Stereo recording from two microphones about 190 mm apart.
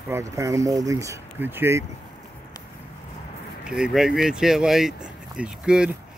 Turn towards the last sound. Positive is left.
turn(degrees=-5)  # may be behind; listen again after turning